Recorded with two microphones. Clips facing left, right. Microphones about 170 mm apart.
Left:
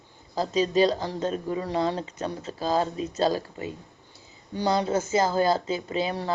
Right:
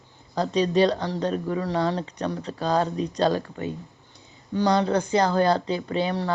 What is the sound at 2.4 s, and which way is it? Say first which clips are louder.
Speech: right 1 dB; 40° right (ahead or behind).